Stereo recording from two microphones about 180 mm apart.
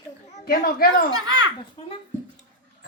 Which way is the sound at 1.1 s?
20° right (ahead or behind).